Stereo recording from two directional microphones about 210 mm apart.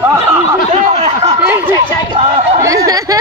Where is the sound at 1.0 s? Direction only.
20° right (ahead or behind).